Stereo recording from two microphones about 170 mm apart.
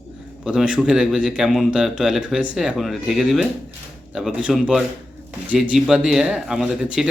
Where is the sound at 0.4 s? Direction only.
5° right (ahead or behind).